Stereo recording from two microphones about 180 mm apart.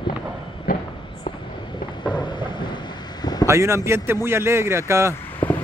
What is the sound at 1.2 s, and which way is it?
Thunder, 25° left (ahead or behind).